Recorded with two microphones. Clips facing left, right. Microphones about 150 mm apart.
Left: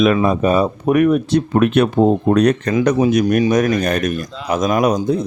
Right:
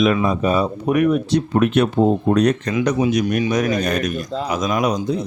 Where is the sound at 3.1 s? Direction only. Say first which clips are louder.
Left 4 dB; 45° left (ahead or behind).